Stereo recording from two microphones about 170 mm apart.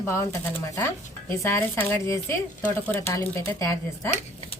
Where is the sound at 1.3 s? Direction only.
15° left (ahead or behind).